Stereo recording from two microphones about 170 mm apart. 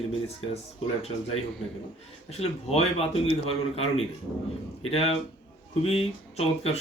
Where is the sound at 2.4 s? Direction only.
35° left (ahead or behind).